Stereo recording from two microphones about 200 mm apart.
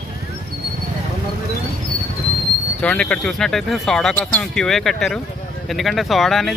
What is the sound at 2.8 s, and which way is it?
Speech, 5° left (ahead or behind).